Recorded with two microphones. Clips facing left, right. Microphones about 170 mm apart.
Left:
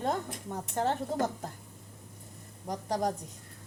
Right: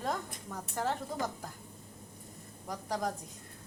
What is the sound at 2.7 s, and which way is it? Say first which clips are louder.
Speech: left 4 dB; 40° left (ahead or behind).